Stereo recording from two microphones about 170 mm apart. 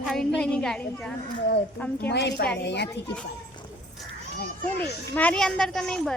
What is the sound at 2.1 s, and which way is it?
Speech, 80° left.